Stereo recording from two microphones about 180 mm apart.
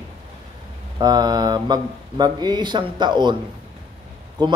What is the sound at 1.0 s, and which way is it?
Speech, 20° right (ahead or behind).